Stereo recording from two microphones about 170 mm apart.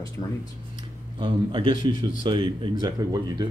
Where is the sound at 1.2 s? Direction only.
30° right (ahead or behind).